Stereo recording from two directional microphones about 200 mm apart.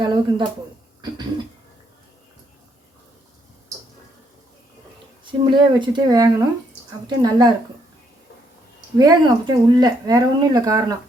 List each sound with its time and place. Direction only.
0.0 s a sound: 20° right (ahead or behind)
5.5 s speech: 25° right (ahead or behind)
9.0 s speech: 20° right (ahead or behind)